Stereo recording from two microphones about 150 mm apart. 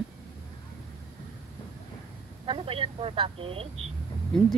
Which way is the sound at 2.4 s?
35° right (ahead or behind).